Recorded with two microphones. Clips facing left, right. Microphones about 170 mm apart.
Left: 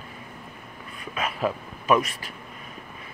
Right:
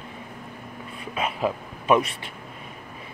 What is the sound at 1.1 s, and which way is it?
Speech, 20° right (ahead or behind).